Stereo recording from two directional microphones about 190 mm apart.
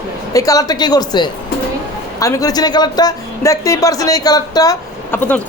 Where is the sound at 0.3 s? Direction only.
20° left (ahead or behind).